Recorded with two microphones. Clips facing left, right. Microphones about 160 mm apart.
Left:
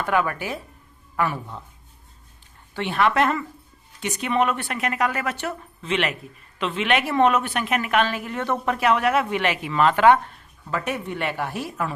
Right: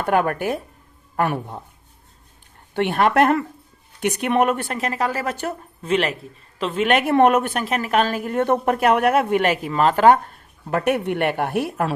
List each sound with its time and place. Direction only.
0.0 s a woman's voice: 50° right (ahead or behind)
2.7 s a woman's voice: 55° right (ahead or behind)
10.7 s speech: 60° right (ahead or behind)